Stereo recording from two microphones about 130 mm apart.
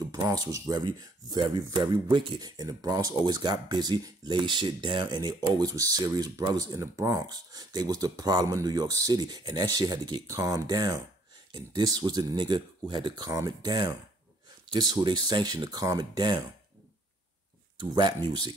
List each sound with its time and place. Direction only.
0.0 s speech: 30° right (ahead or behind)
17.7 s speech: 35° right (ahead or behind)